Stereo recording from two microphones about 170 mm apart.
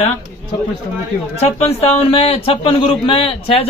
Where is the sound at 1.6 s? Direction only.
35° left (ahead or behind).